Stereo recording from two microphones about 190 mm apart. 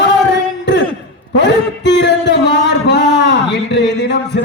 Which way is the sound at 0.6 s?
70° left (ahead or behind).